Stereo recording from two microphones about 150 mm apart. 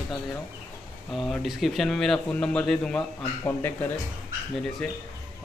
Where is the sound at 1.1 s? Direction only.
Centre (ahead or behind).